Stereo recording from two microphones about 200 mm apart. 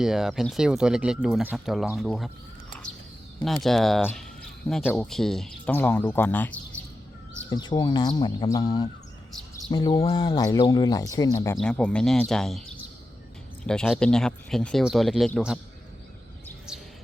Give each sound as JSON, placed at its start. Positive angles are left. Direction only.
{"t": 0.0, "sound": "speech", "side_deg": 0}
{"t": 3.4, "sound": "speech", "side_deg": 0}
{"t": 7.5, "sound": "speech", "side_deg": 20}
{"t": 11.5, "sound": "speech", "side_deg": 5}